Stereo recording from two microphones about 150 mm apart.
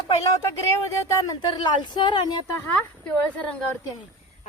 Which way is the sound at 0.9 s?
20° left (ahead or behind).